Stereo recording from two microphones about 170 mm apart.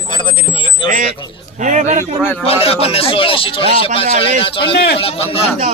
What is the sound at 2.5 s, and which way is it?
Speech, 35° left (ahead or behind).